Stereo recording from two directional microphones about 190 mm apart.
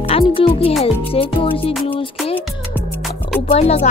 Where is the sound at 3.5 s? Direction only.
35° left (ahead or behind).